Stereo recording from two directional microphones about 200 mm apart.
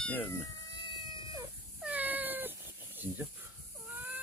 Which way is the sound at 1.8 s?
10° right (ahead or behind).